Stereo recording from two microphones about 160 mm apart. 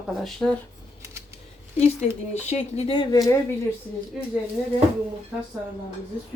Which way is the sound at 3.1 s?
20° left (ahead or behind).